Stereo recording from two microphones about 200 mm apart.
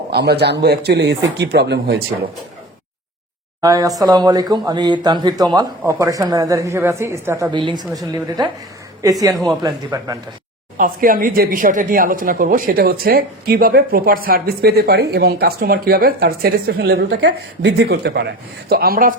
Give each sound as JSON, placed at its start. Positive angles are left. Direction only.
{"t": 0.1, "sound": "speech", "side_deg": -55}
{"t": 3.6, "sound": "a woman's voice", "side_deg": -15}
{"t": 7.5, "sound": "a woman's voice", "side_deg": -25}
{"t": 10.8, "sound": "speech", "side_deg": -45}